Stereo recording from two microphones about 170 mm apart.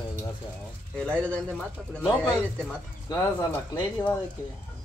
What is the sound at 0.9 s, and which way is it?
Speech, 5° left (ahead or behind).